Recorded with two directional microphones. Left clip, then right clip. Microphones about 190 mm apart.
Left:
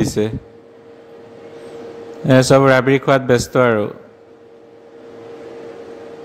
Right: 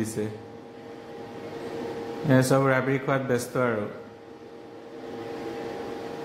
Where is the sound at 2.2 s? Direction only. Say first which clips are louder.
Left 11 dB; 45° left (ahead or behind).